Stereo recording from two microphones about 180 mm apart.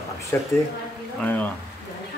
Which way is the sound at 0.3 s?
15° left (ahead or behind).